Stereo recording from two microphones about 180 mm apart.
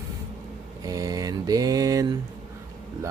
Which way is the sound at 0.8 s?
20° right (ahead or behind).